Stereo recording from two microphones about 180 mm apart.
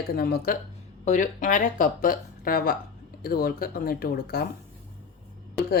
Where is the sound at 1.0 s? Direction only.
45° left (ahead or behind); by 4.5 s 60° left (ahead or behind).